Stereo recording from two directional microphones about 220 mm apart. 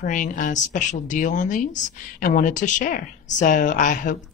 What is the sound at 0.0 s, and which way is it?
Speech, 35° left (ahead or behind).